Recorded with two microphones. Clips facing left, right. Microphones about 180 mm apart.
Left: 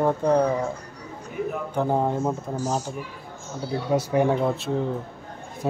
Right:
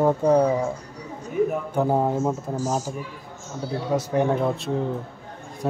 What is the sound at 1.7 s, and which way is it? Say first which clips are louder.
Speech: right 2 dB; 5° right (ahead or behind).